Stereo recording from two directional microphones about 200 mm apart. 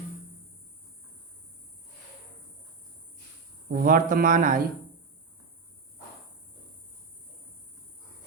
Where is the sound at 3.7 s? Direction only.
45° right (ahead or behind).